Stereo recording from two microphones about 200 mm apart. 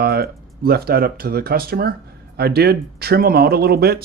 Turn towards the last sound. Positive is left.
turn(degrees=-50)  # may be behind; listen again after turning